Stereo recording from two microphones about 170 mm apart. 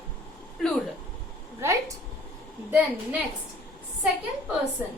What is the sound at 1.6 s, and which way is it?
A woman's voice, 15° right (ahead or behind).